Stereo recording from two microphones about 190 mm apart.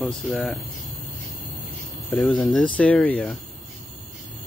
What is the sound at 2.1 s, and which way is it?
Speech, 5° left (ahead or behind).